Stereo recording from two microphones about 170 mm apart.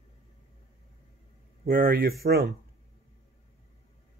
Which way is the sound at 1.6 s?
60° right (ahead or behind).